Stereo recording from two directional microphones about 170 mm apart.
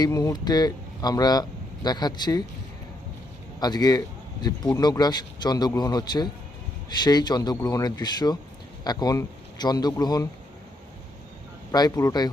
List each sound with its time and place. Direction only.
0.0 s speech: 20° left (ahead or behind)
3.6 s a man's voice: 25° left (ahead or behind)
11.7 s a man's voice: 20° left (ahead or behind)